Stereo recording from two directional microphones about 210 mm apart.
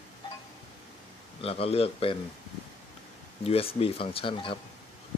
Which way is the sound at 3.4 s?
25° left (ahead or behind).